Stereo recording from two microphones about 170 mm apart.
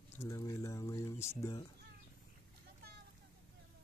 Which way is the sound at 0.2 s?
20° left (ahead or behind).